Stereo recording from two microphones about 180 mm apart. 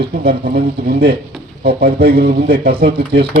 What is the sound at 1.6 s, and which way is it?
Speech, 60° right (ahead or behind).